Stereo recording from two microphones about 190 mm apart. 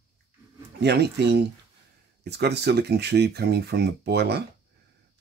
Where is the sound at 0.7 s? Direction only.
60° right (ahead or behind).